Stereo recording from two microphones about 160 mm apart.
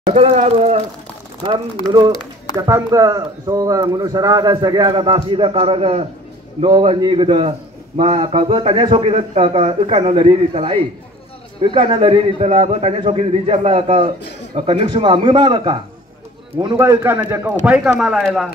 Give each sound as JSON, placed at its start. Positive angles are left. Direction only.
{"t": 0.0, "sound": "speech", "side_deg": -45}
{"t": 1.9, "sound": "a man's voice", "side_deg": -25}
{"t": 16.7, "sound": "a man's voice", "side_deg": -15}
{"t": 18.2, "sound": "speech", "side_deg": 0}